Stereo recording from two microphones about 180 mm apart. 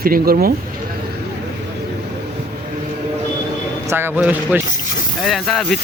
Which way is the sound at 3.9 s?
10° right (ahead or behind).